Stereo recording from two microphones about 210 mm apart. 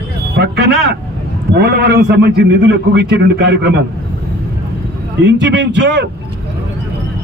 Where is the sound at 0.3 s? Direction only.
50° right (ahead or behind).